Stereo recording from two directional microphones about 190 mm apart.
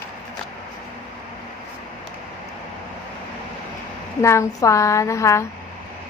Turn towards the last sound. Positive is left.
turn(degrees=15)  # may be behind; listen again after turning